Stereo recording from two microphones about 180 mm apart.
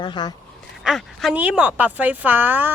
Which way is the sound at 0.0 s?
25° left (ahead or behind).